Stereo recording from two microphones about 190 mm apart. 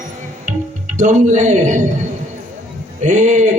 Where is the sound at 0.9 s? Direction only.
40° right (ahead or behind).